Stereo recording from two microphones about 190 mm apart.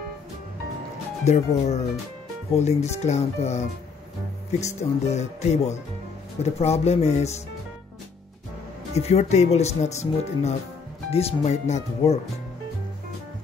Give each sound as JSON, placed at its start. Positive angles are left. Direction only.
{"t": 1.2, "sound": "speech", "side_deg": 35}
{"t": 8.9, "sound": "speech", "side_deg": 35}